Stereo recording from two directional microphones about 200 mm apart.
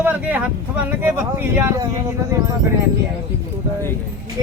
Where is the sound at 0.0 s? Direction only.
10° right (ahead or behind).